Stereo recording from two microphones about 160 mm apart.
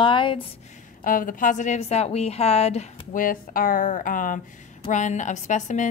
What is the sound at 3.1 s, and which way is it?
A woman's voice, 60° left (ahead or behind).